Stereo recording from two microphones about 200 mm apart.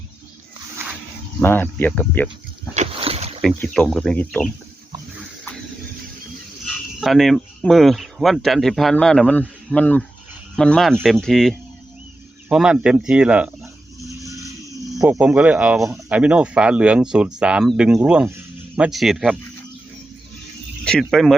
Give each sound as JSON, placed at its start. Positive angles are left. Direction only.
{"t": 1.4, "sound": "speech", "side_deg": 10}
{"t": 2.7, "sound": "boat", "side_deg": -30}
{"t": 3.4, "sound": "speech", "side_deg": 5}
{"t": 7.0, "sound": "speech", "side_deg": 0}
{"t": 14.1, "sound": "vehicle", "side_deg": -15}
{"t": 15.0, "sound": "speech", "side_deg": -5}
{"t": 20.8, "sound": "speech", "side_deg": 0}